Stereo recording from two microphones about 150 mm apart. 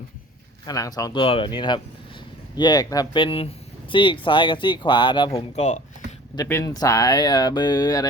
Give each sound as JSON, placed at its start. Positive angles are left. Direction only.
{"t": 0.6, "sound": "speech", "side_deg": 25}
{"t": 5.5, "sound": "speech", "side_deg": 50}
{"t": 6.3, "sound": "speech", "side_deg": 20}